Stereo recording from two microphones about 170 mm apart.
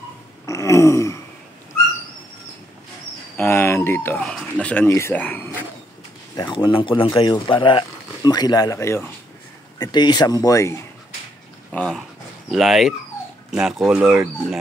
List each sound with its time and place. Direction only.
0.5 s a sound: 15° left (ahead or behind)
3.3 s speech: 15° left (ahead or behind)
6.3 s speech: 30° left (ahead or behind)
11.7 s speech: 5° left (ahead or behind)